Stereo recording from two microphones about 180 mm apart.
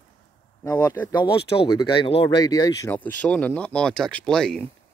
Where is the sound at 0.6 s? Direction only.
15° left (ahead or behind).